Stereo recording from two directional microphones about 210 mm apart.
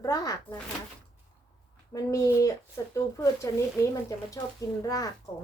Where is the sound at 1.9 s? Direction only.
15° left (ahead or behind).